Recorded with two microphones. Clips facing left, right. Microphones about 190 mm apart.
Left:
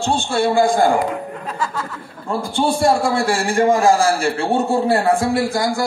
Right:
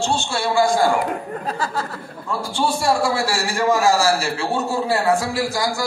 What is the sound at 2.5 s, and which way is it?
A man's voice, 55° left (ahead or behind).